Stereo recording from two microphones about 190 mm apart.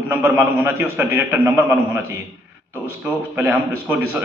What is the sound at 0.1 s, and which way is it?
A man's voice, 10° right (ahead or behind).